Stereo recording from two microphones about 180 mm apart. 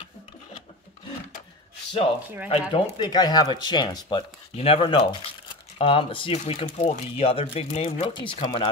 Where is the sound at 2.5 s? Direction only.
25° left (ahead or behind).